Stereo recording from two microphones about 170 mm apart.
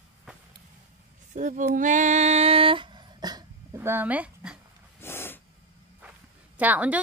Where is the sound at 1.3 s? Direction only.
50° right (ahead or behind).